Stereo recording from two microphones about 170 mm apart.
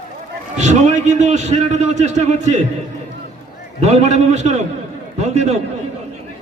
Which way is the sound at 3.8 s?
40° right (ahead or behind).